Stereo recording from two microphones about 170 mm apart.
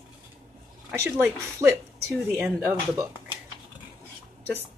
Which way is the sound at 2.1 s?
5° right (ahead or behind).